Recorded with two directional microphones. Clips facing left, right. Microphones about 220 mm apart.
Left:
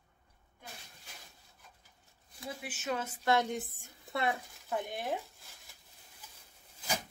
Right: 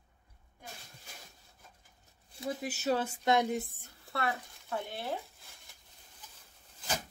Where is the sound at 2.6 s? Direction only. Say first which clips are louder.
Right 5 dB; 35° right (ahead or behind); by 3.5 s 20° right (ahead or behind).